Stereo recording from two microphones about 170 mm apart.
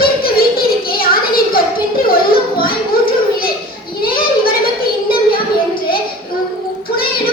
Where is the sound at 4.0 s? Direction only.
60° left (ahead or behind).